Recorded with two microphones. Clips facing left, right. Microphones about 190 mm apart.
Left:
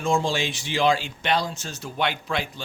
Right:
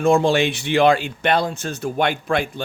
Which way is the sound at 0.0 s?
60° right (ahead or behind).